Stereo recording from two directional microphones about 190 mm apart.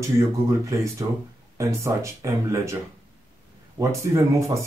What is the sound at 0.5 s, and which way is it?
Speech, 15° right (ahead or behind).